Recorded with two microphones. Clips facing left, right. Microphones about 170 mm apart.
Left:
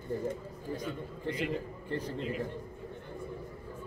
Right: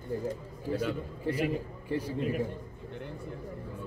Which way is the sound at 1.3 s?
10° right (ahead or behind).